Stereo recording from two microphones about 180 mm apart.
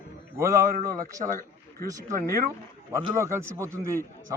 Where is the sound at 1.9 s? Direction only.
20° right (ahead or behind).